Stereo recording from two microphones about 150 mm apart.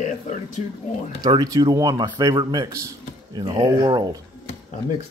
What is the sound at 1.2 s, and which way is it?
A man's voice, 25° right (ahead or behind).